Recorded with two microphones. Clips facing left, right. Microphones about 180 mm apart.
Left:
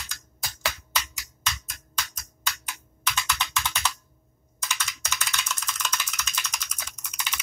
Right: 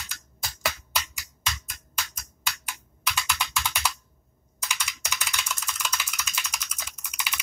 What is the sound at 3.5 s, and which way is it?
Computer keyboard, 10° right (ahead or behind).